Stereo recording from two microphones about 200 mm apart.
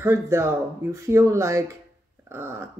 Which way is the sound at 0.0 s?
15° right (ahead or behind).